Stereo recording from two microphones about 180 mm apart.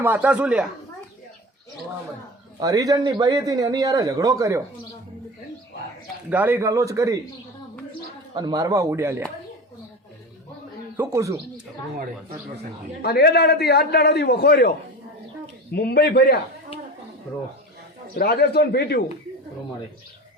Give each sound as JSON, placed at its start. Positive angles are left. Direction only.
{"t": 0.0, "sound": "a man's voice", "side_deg": -10}
{"t": 2.6, "sound": "speech", "side_deg": -20}
{"t": 6.3, "sound": "a man's voice", "side_deg": -10}
{"t": 8.4, "sound": "a man's voice", "side_deg": -25}
{"t": 10.9, "sound": "a man's voice", "side_deg": -15}
{"t": 13.0, "sound": "a man's voice", "side_deg": 60}
{"t": 15.7, "sound": "a man's voice", "side_deg": 60}
{"t": 18.2, "sound": "a man's voice", "side_deg": 60}